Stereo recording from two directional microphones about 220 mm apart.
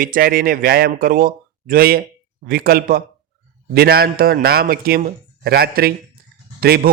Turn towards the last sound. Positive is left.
turn(degrees=-45)  # may be behind; listen again after turning